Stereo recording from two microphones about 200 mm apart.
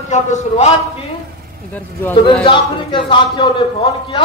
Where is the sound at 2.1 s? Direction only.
25° left (ahead or behind).